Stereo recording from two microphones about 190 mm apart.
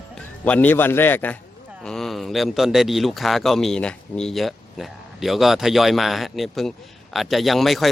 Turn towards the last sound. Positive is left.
turn(degrees=0)  # may be behind; listen again after turning